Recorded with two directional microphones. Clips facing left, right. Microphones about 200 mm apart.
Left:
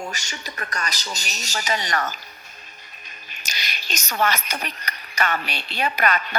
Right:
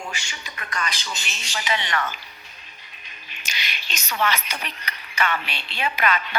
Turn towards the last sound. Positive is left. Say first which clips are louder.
# left 1 dB
turn(degrees=45)  # may be behind; listen again after turning